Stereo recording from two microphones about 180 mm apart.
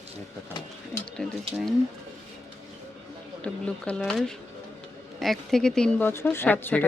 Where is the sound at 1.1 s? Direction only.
Centre (ahead or behind).